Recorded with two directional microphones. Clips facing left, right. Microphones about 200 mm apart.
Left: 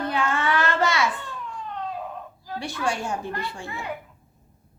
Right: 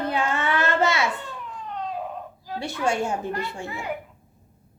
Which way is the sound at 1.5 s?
10° right (ahead or behind).